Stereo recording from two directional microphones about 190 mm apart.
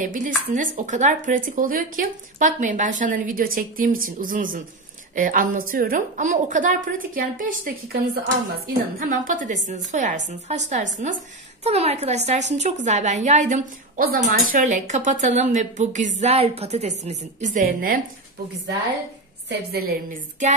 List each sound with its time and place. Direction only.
0.0 s a woman's voice: 45° right (ahead or behind)
19.7 s a woman's voice: 50° right (ahead or behind)